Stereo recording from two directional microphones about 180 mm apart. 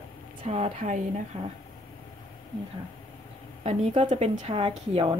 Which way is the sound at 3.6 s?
35° right (ahead or behind).